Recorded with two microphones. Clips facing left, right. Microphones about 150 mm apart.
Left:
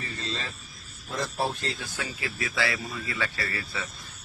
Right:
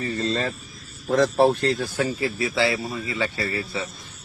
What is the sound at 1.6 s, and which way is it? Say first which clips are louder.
Speech: right 11 dB; 35° right (ahead or behind).